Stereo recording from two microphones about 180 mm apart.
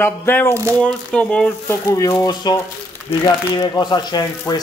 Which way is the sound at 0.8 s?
5° left (ahead or behind).